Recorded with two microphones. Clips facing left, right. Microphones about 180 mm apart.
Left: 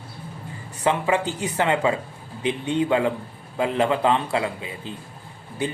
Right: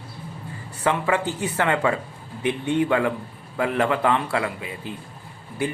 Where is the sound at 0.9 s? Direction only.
20° left (ahead or behind).